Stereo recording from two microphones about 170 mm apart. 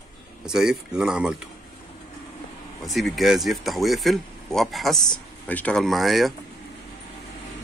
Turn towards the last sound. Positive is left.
turn(degrees=0)  # may be behind; listen again after turning